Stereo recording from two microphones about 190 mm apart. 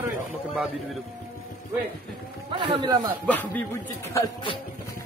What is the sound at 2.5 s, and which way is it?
Speech, 25° right (ahead or behind).